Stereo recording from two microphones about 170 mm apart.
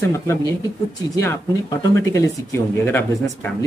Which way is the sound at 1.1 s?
20° left (ahead or behind).